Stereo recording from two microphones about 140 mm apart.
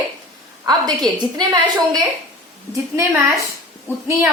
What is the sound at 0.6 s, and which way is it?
Speech, 30° right (ahead or behind).